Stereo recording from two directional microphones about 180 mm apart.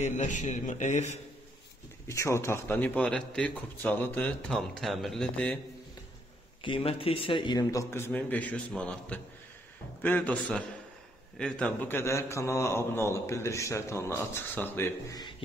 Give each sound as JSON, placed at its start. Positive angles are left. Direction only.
{"t": 0.0, "sound": "a man's voice", "side_deg": 40}
{"t": 2.0, "sound": "a man's voice", "side_deg": 15}
{"t": 6.6, "sound": "a man's voice", "side_deg": 30}